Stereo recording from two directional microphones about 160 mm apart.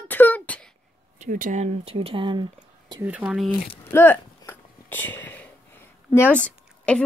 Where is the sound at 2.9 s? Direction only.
10° right (ahead or behind).